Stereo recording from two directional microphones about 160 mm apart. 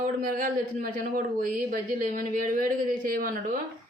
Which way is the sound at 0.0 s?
60° right (ahead or behind).